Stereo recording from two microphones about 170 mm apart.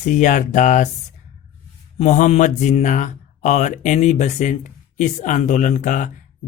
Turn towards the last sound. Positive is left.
turn(degrees=45)  # may be behind; listen again after turning